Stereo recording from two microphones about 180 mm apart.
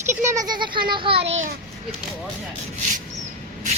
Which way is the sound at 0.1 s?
15° right (ahead or behind).